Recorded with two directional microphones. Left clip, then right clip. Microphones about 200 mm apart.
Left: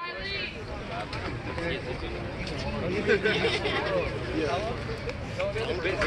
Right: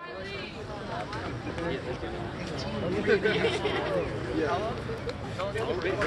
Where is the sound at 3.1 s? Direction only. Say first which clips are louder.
Left 1 dB; 40° right (ahead or behind).